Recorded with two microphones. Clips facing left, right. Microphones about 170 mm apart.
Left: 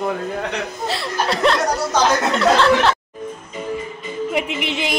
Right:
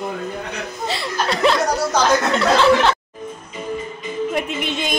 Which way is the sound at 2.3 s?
Centre (ahead or behind).